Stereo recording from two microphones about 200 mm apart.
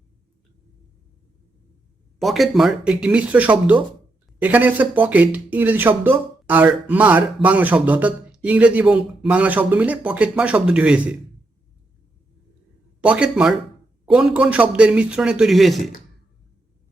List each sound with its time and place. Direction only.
2.1 s a man's voice: centre (ahead or behind)
13.0 s a man's voice: 5° right (ahead or behind)